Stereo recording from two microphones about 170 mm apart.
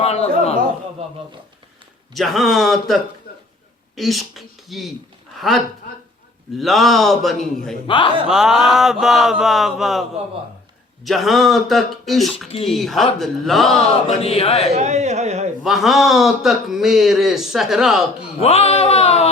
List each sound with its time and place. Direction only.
0.0 s a man's voice: 40° left (ahead or behind)
2.1 s a man's voice: centre (ahead or behind)
3.3 s a sound: 60° left (ahead or behind)
3.9 s a man's voice: centre (ahead or behind)
7.9 s a man's voice: 30° left (ahead or behind)
8.3 s a man's voice: centre (ahead or behind)
14.2 s speech: 35° left (ahead or behind)
14.7 s speech: 40° right (ahead or behind)
15.6 s a man's voice: centre (ahead or behind)
18.4 s speech: 35° left (ahead or behind)